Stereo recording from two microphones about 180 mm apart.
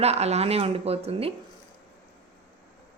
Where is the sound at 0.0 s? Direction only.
35° right (ahead or behind).